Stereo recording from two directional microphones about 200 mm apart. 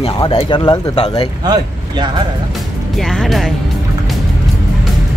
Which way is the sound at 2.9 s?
Centre (ahead or behind).